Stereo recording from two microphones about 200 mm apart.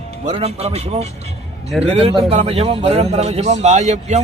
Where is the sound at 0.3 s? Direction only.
30° right (ahead or behind).